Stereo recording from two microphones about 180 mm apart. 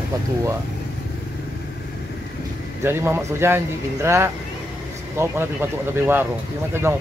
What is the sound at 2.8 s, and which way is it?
Speech, 15° right (ahead or behind).